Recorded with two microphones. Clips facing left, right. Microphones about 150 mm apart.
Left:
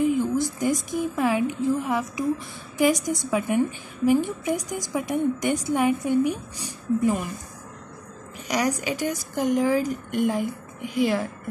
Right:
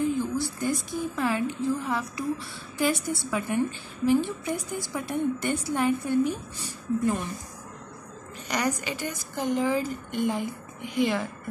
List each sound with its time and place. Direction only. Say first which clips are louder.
0.0 s a woman's voice: left 4 dB; 15° left (ahead or behind)
8.5 s a woman's voice: left 4 dB; 10° left (ahead or behind)